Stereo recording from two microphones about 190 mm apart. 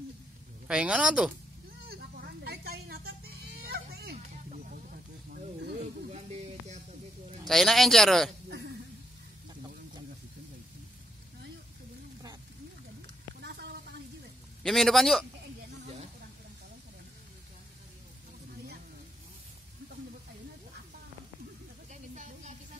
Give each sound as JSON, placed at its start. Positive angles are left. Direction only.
{"t": 0.7, "sound": "speech", "side_deg": -5}
{"t": 1.9, "sound": "music", "side_deg": -55}
{"t": 4.5, "sound": "snake", "side_deg": -45}
{"t": 6.0, "sound": "music", "side_deg": -35}
{"t": 7.4, "sound": "speech", "side_deg": 0}
{"t": 13.4, "sound": "a sound", "side_deg": -60}
{"t": 14.6, "sound": "speech", "side_deg": 0}
{"t": 22.1, "sound": "a sound", "side_deg": -40}